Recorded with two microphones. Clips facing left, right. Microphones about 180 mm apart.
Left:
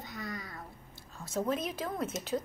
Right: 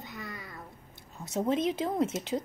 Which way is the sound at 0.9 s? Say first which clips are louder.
Right 2 dB; 20° right (ahead or behind).